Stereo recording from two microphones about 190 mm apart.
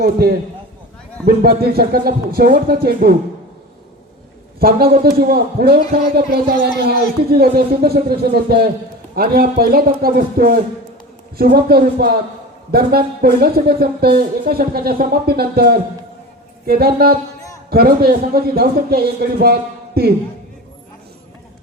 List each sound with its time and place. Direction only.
0.0 s speech: 55° right (ahead or behind)
1.4 s speech: 55° right (ahead or behind)
4.6 s speech: 50° right (ahead or behind)